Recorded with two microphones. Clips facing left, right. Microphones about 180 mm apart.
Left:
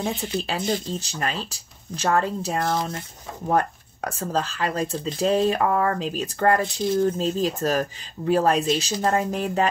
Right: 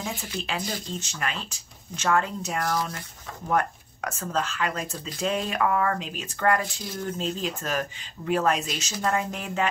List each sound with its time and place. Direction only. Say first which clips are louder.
0.0 s speech: left 6 dB; 30° left (ahead or behind)